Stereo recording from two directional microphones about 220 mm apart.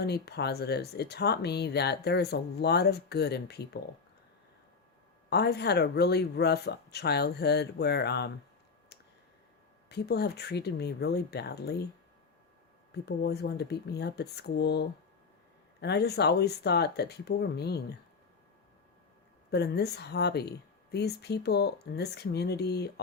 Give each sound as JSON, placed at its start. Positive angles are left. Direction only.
{"t": 0.0, "sound": "speech", "side_deg": 50}
{"t": 5.3, "sound": "speech", "side_deg": 50}
{"t": 9.9, "sound": "speech", "side_deg": 45}
{"t": 12.9, "sound": "speech", "side_deg": 50}
{"t": 19.5, "sound": "speech", "side_deg": 50}